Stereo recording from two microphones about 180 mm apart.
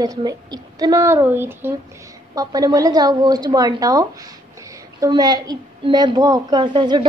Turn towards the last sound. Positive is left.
turn(degrees=-25)  # may be behind; listen again after turning